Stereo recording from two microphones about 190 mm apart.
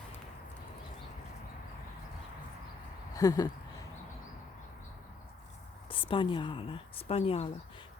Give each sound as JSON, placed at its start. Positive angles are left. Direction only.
{"t": 3.2, "sound": "speech", "side_deg": 20}
{"t": 5.9, "sound": "speech", "side_deg": 30}